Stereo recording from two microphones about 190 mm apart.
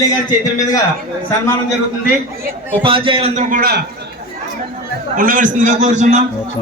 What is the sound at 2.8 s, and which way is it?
A man's voice, 30° right (ahead or behind).